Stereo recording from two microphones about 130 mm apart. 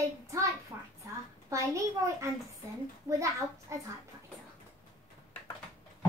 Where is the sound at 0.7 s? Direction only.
25° right (ahead or behind).